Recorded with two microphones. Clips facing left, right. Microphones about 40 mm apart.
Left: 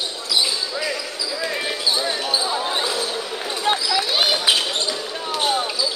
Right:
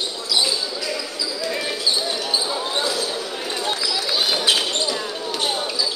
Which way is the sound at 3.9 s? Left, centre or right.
Left.